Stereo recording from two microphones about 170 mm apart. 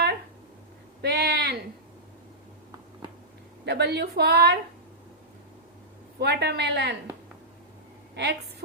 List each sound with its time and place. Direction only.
1.0 s a sound: 70° right (ahead or behind)
3.7 s a woman's voice: 80° right
6.1 s speech: 75° right (ahead or behind)
8.1 s a woman's voice: 85° right